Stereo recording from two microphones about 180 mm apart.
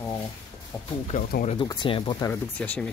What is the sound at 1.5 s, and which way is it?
Speech, 25° left (ahead or behind).